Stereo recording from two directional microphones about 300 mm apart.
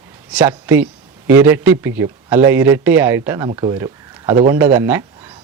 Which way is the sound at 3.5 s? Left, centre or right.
Centre.